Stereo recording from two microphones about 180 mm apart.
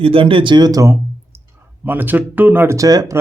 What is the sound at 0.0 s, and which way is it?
Speech, 30° right (ahead or behind).